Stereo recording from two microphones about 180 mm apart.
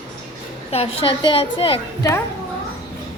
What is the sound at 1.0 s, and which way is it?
Speech, 30° left (ahead or behind).